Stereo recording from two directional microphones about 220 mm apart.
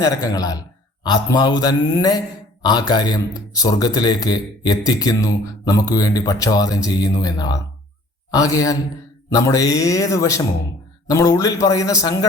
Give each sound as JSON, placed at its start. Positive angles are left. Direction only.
{"t": 0.0, "sound": "a man's voice", "side_deg": 15}